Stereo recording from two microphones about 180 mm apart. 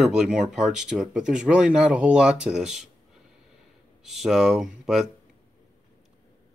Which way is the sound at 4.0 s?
Centre (ahead or behind).